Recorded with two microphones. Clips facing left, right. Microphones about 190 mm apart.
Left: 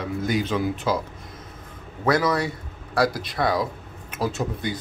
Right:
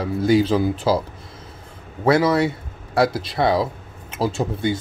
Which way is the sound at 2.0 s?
25° right (ahead or behind).